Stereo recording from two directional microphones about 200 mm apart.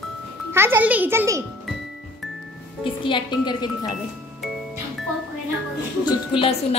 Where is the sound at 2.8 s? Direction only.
25° left (ahead or behind).